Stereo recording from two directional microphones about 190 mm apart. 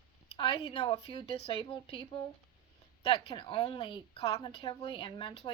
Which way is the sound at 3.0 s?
25° left (ahead or behind).